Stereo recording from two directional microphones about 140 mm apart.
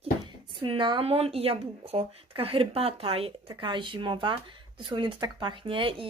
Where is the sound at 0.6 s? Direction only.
35° right (ahead or behind).